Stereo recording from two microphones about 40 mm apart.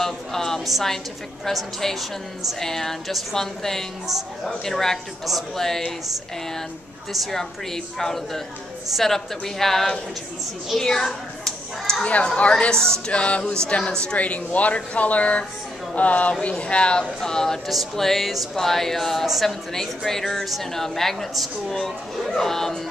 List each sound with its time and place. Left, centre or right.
0.0 s speech: centre
7.1 s a child's voice: centre
12.0 s speech: left
16.4 s speech: left
17.6 s speech: centre